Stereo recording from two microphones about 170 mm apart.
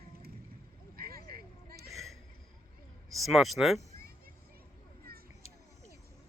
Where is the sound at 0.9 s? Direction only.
60° right (ahead or behind).